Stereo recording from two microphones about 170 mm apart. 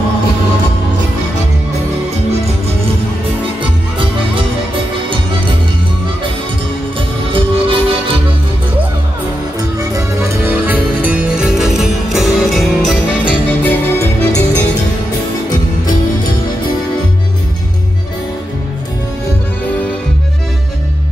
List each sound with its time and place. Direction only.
7.3 s music: 30° right (ahead or behind)
9.8 s music: 15° right (ahead or behind); by 14.4 s 10° left (ahead or behind)